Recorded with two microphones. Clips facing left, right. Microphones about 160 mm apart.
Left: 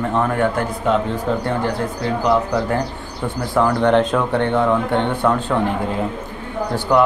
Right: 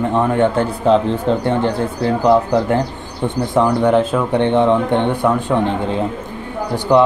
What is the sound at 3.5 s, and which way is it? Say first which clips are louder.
Speech: right 1 dB; 15° right (ahead or behind).